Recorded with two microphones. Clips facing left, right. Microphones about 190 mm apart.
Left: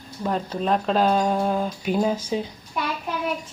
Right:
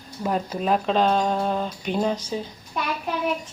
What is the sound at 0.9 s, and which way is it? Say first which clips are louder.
A woman's voice: left 1 dB; 5° left (ahead or behind).